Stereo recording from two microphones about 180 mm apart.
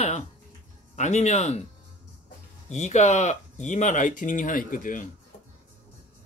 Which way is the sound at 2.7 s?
40° left (ahead or behind).